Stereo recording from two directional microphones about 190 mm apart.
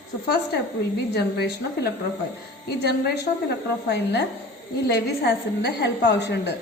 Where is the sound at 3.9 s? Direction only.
65° left (ahead or behind).